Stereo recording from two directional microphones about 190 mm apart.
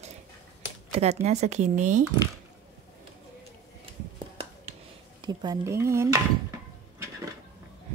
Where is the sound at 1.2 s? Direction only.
35° right (ahead or behind).